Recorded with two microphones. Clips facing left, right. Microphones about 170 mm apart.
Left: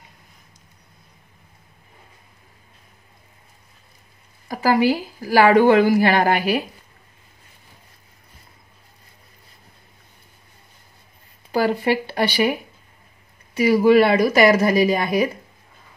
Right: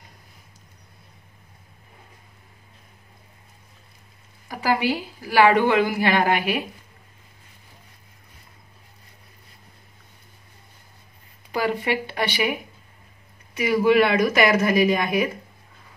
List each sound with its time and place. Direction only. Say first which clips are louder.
4.5 s a woman's voice: left 5 dB; 40° left (ahead or behind)
11.5 s a woman's voice: left 4 dB; 35° left (ahead or behind)
13.6 s a woman's voice: left 4 dB; 35° left (ahead or behind)